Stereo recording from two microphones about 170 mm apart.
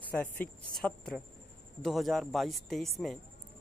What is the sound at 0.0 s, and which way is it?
Speech, 10° left (ahead or behind).